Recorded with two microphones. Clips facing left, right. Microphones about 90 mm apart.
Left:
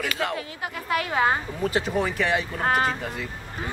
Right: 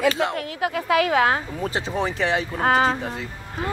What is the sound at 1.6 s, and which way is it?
Speech, 30° right (ahead or behind).